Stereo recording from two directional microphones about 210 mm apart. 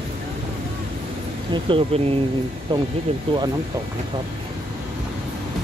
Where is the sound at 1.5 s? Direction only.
25° right (ahead or behind).